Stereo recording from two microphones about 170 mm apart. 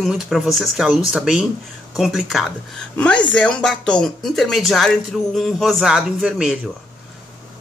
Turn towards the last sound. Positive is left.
turn(degrees=-5)  # may be behind; listen again after turning